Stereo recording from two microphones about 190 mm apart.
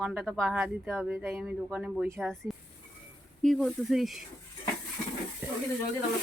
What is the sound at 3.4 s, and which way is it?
Speech, centre (ahead or behind).